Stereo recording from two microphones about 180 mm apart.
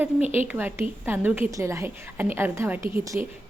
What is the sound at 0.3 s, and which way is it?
A woman's voice, 10° right (ahead or behind).